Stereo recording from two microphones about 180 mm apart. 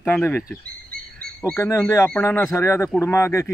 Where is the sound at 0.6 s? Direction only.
55° right (ahead or behind).